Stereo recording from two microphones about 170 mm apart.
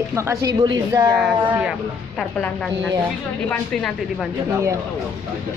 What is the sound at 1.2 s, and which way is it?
Speech, 5° right (ahead or behind).